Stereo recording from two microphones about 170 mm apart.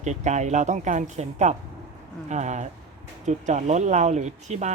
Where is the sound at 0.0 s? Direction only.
45° right (ahead or behind).